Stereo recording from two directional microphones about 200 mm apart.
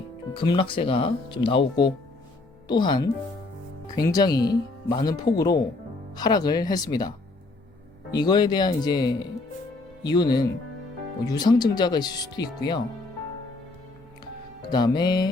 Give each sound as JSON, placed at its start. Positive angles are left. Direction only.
{"t": 0.3, "sound": "speech", "side_deg": 25}
{"t": 8.2, "sound": "speech", "side_deg": 20}
{"t": 14.7, "sound": "speech", "side_deg": 20}